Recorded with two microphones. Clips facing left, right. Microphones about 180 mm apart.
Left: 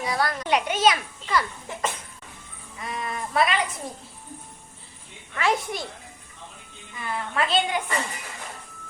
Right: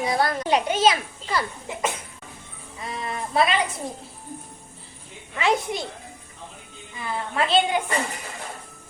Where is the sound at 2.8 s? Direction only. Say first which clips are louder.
Right 1 dB; 25° right (ahead or behind).